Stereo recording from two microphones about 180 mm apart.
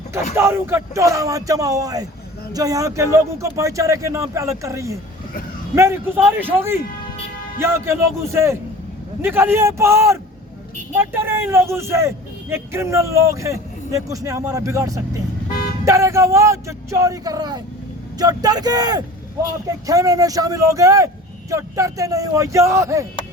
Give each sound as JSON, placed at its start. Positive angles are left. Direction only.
{"t": 0.3, "sound": "a man's voice", "side_deg": -15}